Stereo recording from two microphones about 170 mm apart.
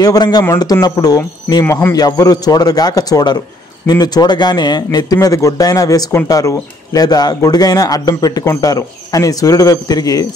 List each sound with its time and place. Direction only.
0.0 s speech: 25° left (ahead or behind)